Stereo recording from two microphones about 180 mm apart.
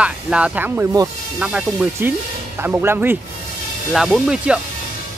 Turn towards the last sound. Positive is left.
turn(degrees=-5)  # may be behind; listen again after turning